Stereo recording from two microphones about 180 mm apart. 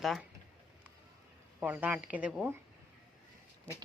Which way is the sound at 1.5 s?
10° right (ahead or behind).